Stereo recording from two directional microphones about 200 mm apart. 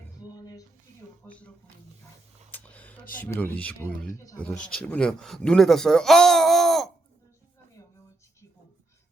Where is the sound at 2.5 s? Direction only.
10° left (ahead or behind).